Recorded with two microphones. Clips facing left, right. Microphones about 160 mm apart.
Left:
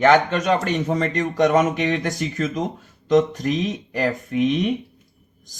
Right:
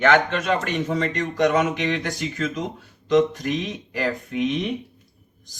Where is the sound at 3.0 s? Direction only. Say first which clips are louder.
Left 1 dB; 40° left (ahead or behind).